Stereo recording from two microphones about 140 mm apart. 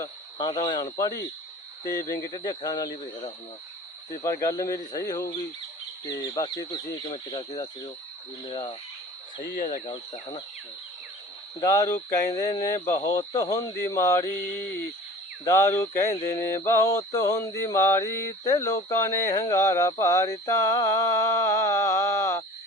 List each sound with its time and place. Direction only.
0.0 s speech: 30° left (ahead or behind)
2.6 s mantra: 30° left (ahead or behind)
6.1 s speech: 30° left (ahead or behind)
9.4 s speech: 70° left (ahead or behind)
9.8 s speech: 35° left (ahead or behind)
11.6 s mantra: 25° left (ahead or behind)